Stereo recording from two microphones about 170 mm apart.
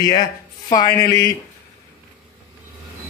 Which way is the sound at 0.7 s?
20° left (ahead or behind).